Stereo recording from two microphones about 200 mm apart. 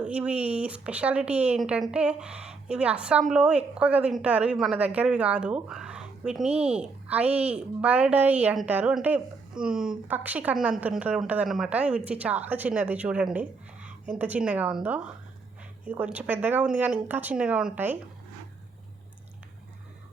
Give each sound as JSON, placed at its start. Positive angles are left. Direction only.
{"t": 0.0, "sound": "a woman's voice", "side_deg": -5}
{"t": 6.5, "sound": "speech", "side_deg": -30}
{"t": 7.3, "sound": "a woman's voice", "side_deg": -5}